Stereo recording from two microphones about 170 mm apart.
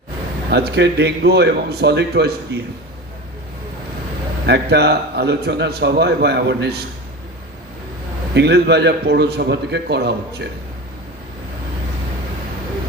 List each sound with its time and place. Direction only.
0.5 s a man's voice: 75° right (ahead or behind)
4.4 s a man's voice: 75° right (ahead or behind)
8.4 s a man's voice: 75° right (ahead or behind)